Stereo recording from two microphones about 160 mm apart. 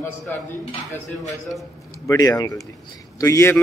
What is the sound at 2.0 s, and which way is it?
Speech, 20° left (ahead or behind).